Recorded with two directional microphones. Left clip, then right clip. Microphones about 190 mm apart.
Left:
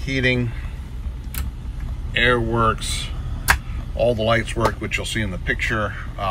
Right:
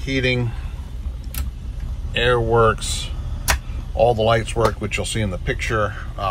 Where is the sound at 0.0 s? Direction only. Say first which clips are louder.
Even; 5° right (ahead or behind).